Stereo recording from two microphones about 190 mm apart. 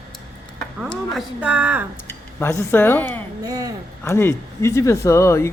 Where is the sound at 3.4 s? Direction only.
20° right (ahead or behind).